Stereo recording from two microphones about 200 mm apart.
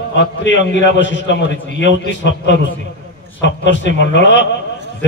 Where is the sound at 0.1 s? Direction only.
60° left (ahead or behind).